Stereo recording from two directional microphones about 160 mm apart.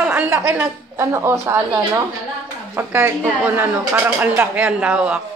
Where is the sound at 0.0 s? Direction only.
10° right (ahead or behind).